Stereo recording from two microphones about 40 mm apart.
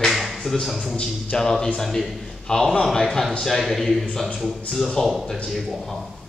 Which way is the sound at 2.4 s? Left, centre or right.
Centre.